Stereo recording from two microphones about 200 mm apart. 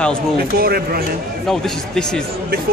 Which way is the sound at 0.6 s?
50° right (ahead or behind).